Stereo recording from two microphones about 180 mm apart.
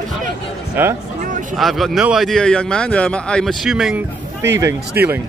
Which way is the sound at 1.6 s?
Centre (ahead or behind).